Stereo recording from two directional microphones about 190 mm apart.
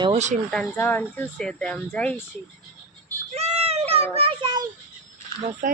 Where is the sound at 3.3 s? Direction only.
35° right (ahead or behind).